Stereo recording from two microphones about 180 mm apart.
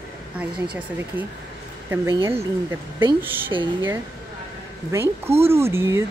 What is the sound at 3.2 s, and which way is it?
Speech, 10° right (ahead or behind).